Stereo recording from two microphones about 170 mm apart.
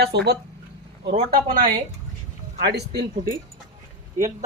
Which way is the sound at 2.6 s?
75° right (ahead or behind).